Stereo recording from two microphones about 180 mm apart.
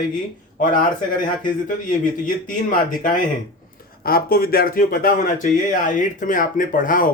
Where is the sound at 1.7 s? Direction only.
50° left (ahead or behind).